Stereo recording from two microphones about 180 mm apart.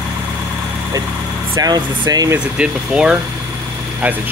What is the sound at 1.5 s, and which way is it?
Speech, 20° right (ahead or behind).